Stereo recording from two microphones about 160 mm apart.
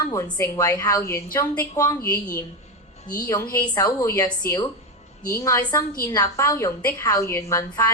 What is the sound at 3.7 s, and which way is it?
A woman's voice, 20° left (ahead or behind).